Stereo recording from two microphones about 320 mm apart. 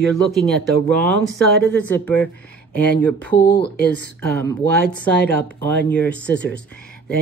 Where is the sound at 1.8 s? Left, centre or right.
Centre.